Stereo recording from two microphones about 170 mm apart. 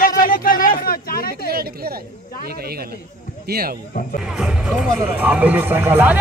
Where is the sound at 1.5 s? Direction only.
65° right (ahead or behind).